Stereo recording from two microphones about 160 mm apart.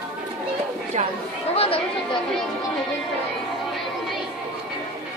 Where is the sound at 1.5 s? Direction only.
40° left (ahead or behind).